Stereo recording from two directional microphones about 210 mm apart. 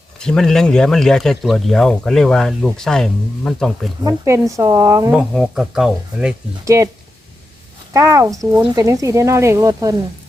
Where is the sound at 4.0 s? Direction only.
15° right (ahead or behind).